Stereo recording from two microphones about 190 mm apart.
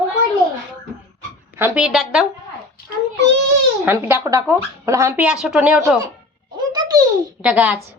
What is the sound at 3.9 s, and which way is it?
Speech, 10° right (ahead or behind).